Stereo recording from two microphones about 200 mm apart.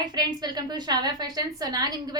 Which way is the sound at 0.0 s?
20° right (ahead or behind).